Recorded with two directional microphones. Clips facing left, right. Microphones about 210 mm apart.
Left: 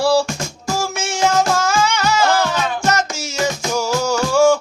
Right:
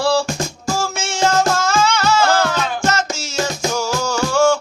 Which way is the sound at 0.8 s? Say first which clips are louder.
Left 1 dB; 15° left (ahead or behind).